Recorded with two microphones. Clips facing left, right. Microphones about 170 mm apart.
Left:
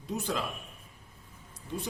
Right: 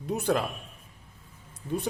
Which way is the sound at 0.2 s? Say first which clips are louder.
Right 8 dB; 60° right (ahead or behind).